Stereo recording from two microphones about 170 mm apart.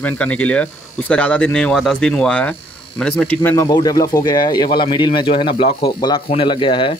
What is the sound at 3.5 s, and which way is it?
Speech, 20° left (ahead or behind).